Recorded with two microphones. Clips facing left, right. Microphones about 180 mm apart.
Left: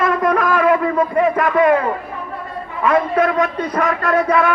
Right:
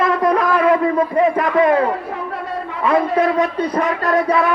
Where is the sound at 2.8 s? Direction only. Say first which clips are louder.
Even; 30° right (ahead or behind).